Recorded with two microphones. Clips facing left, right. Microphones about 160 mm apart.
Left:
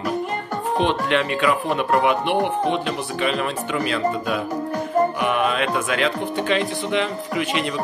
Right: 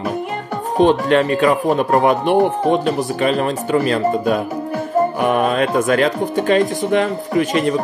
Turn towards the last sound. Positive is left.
turn(degrees=-45)  # may be behind; listen again after turning